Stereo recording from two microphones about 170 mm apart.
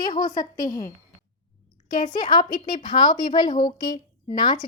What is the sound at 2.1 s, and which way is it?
A woman's voice, 25° left (ahead or behind).